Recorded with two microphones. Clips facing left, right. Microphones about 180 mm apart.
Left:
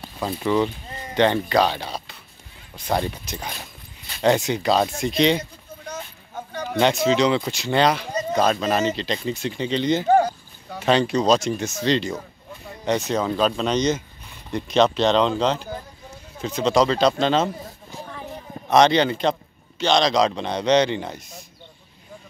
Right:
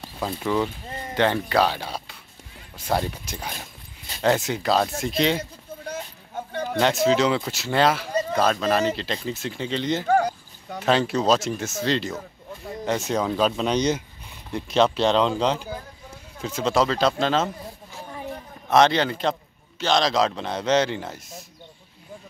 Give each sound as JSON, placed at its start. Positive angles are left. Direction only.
{"t": 0.0, "sound": "speech", "side_deg": 0}
{"t": 5.4, "sound": "a sound", "side_deg": -30}
{"t": 6.8, "sound": "speech", "side_deg": 0}
{"t": 18.7, "sound": "speech", "side_deg": 0}